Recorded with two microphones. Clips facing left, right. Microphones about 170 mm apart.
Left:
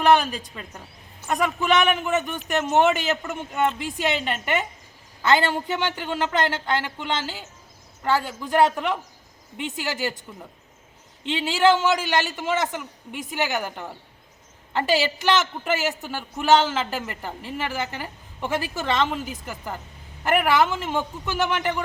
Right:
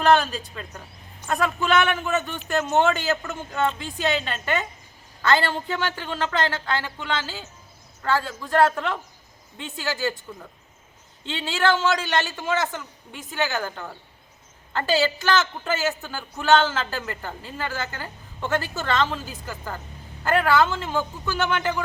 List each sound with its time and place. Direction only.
0.0 s a woman's voice: 15° left (ahead or behind)
11.3 s a woman's voice: 15° left (ahead or behind)